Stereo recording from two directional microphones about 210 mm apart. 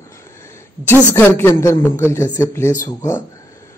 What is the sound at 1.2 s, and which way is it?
Speech, 10° left (ahead or behind).